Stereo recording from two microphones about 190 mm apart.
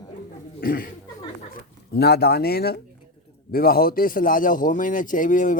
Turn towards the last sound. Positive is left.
turn(degrees=45)  # may be behind; listen again after turning